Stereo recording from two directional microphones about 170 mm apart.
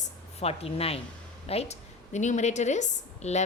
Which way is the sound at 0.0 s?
35° left (ahead or behind).